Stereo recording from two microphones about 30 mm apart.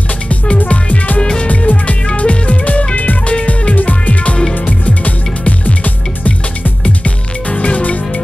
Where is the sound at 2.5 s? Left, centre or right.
Left.